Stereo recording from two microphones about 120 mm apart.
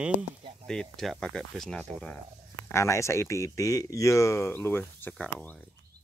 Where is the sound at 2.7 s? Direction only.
25° left (ahead or behind).